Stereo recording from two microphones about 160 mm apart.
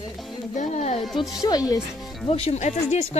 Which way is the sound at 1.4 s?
20° left (ahead or behind).